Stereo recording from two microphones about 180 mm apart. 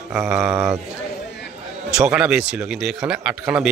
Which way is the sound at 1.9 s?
5° right (ahead or behind).